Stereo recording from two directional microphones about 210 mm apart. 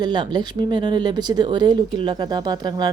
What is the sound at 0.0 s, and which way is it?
A woman's voice, 20° right (ahead or behind).